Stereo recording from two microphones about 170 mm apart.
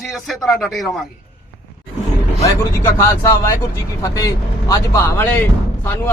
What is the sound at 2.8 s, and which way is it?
Speech, 15° left (ahead or behind).